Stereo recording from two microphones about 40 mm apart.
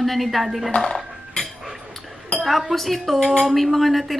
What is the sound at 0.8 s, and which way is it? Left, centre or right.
Music, centre.